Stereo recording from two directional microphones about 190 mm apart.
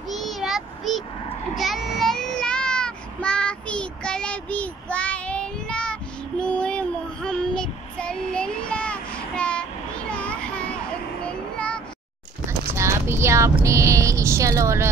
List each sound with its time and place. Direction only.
0.1 s child singing: centre (ahead or behind)
12.7 s a sound: 15° right (ahead or behind)
13.7 s speech: 15° right (ahead or behind)